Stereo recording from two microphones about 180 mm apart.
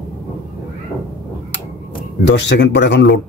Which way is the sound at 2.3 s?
70° left (ahead or behind).